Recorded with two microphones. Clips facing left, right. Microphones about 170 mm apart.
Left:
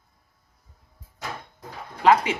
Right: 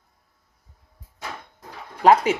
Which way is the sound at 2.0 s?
45° right (ahead or behind).